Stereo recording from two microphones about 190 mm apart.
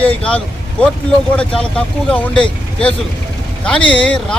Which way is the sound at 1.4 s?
5° left (ahead or behind).